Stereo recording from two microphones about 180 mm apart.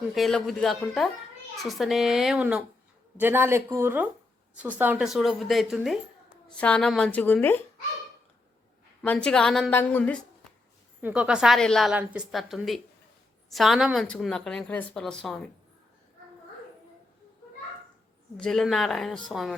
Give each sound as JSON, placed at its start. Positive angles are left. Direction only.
{"t": 0.1, "sound": "a woman's voice", "side_deg": 0}
{"t": 9.0, "sound": "a woman's voice", "side_deg": 5}
{"t": 11.0, "sound": "a woman's voice", "side_deg": -5}
{"t": 18.3, "sound": "a woman's voice", "side_deg": 0}